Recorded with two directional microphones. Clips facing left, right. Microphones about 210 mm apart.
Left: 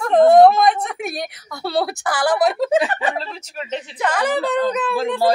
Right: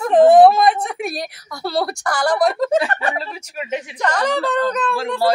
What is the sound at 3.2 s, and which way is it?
Speech, 10° right (ahead or behind).